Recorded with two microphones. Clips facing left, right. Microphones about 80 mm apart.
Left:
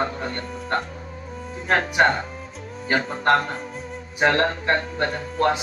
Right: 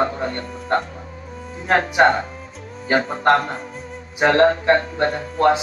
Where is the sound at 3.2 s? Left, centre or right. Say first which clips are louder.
Right 1 dB; right.